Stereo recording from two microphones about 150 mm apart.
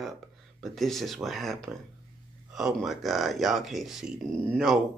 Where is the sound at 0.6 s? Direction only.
Centre (ahead or behind).